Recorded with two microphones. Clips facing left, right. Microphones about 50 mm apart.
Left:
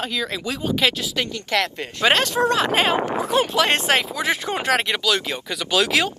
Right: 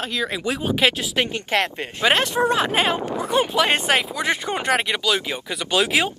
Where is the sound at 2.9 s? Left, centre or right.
Left.